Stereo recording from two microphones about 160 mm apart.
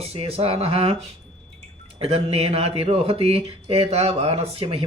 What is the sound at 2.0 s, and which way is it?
Speech, 35° right (ahead or behind).